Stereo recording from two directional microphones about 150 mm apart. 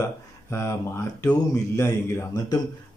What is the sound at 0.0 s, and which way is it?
Speech, 20° left (ahead or behind).